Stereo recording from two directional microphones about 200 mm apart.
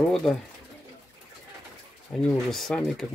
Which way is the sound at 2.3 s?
Centre (ahead or behind).